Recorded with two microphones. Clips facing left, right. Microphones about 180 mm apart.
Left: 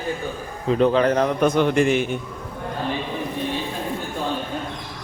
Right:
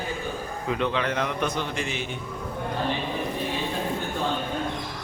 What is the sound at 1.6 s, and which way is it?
Speech, 55° left (ahead or behind).